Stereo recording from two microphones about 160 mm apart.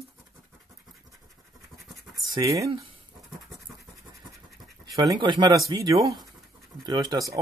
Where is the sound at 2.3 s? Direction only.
20° right (ahead or behind).